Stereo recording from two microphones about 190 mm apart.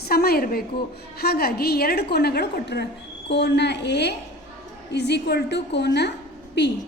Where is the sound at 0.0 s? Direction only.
55° left (ahead or behind).